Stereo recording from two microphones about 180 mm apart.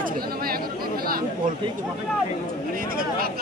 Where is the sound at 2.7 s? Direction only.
55° right (ahead or behind).